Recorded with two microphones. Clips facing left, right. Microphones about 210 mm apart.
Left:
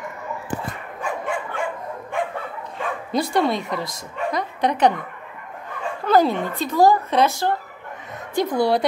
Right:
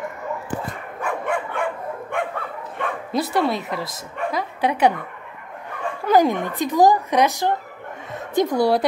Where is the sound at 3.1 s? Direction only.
5° right (ahead or behind).